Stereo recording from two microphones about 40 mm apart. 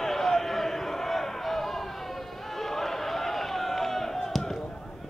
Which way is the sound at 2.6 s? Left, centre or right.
Centre.